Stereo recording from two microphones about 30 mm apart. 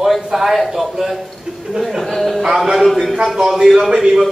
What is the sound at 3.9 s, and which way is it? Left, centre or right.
Speech, right.